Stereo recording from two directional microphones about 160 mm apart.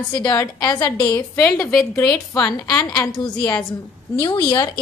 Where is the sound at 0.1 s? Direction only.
25° left (ahead or behind).